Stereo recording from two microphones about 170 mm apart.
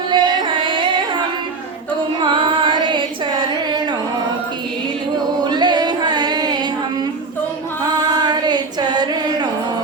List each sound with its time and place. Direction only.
0.1 s music: 30° right (ahead or behind)
2.2 s carnatic music: 30° right (ahead or behind)
5.4 s music: 25° right (ahead or behind)
8.1 s a sound: 25° right (ahead or behind)